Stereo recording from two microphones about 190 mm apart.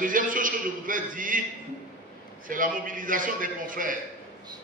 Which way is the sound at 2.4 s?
45° right (ahead or behind).